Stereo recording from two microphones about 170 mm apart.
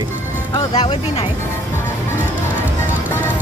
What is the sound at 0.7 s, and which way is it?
Speech, 35° left (ahead or behind).